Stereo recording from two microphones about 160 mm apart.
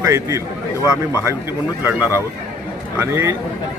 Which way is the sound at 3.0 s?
15° right (ahead or behind).